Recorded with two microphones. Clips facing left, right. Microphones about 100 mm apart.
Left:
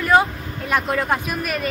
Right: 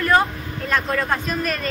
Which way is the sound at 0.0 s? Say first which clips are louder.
Left 1 dB; 10° left (ahead or behind).